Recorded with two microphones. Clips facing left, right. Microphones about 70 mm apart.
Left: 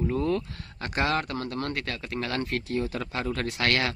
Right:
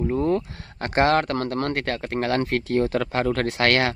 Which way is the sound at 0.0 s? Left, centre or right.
Right.